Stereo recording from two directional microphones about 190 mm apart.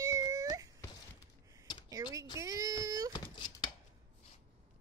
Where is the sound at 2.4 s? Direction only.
15° right (ahead or behind).